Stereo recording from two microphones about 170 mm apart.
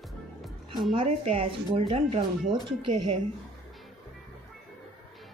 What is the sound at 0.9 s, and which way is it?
Speech, 35° right (ahead or behind).